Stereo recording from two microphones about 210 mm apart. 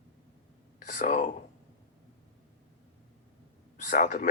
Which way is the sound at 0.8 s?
40° left (ahead or behind).